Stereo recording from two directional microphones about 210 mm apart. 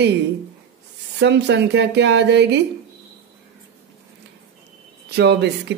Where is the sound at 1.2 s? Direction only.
55° right (ahead or behind).